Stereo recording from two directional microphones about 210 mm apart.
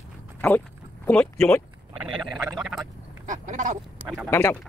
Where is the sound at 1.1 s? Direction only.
5° left (ahead or behind).